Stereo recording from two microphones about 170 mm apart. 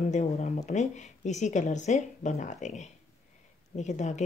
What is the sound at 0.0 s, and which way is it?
Speech, 45° left (ahead or behind).